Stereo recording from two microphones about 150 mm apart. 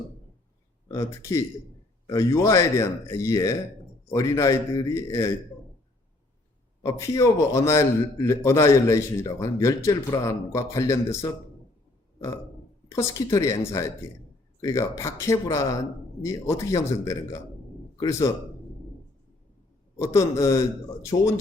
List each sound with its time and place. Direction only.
0.9 s a man's voice: 20° left (ahead or behind)
6.8 s a man's voice: 20° left (ahead or behind)
12.9 s a man's voice: 20° left (ahead or behind)
20.0 s a man's voice: 20° left (ahead or behind)